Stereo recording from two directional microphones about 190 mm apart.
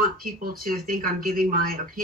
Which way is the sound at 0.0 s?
50° right (ahead or behind).